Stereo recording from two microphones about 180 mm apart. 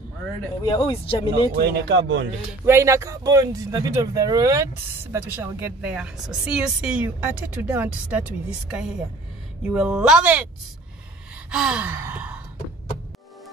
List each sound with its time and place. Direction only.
0.6 s speech: 30° left (ahead or behind)
1.6 s speech: 75° right (ahead or behind)
2.6 s a woman's voice: 15° right (ahead or behind)
11.5 s gasp: 5° right (ahead or behind)